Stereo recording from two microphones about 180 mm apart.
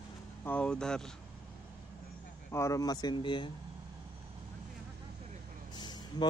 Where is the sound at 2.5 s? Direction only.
15° left (ahead or behind).